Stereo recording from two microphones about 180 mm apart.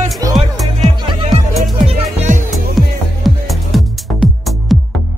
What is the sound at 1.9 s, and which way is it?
Music, 45° right (ahead or behind).